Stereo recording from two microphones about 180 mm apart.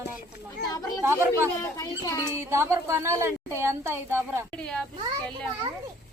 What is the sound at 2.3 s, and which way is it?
A woman's voice, 15° right (ahead or behind).